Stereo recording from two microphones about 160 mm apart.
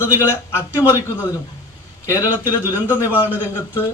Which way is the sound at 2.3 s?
10° right (ahead or behind).